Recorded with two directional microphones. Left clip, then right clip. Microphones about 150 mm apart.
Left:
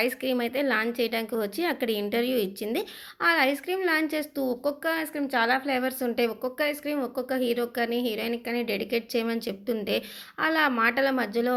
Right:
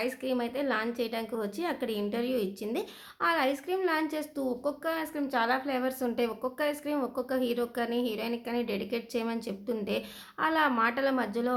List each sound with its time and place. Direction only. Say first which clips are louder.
0.0 s a woman's voice: left 5 dB; 25° left (ahead or behind)